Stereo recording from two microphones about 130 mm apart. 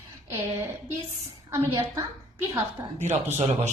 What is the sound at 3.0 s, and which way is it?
Speech, 60° right (ahead or behind).